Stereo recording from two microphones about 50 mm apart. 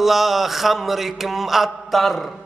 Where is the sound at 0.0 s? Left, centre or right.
Centre.